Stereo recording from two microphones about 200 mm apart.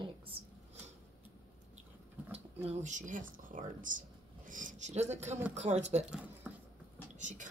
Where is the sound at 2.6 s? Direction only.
40° right (ahead or behind).